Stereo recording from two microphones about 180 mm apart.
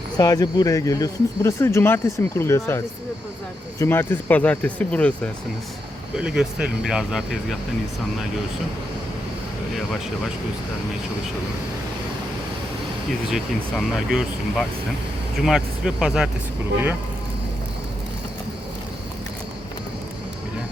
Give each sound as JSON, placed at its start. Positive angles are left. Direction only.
{"t": 0.2, "sound": "speech", "side_deg": 20}
{"t": 6.1, "sound": "speech", "side_deg": -5}
{"t": 13.3, "sound": "speech", "side_deg": -5}